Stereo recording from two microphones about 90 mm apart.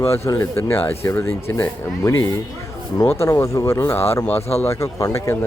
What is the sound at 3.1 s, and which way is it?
Speech, 30° left (ahead or behind).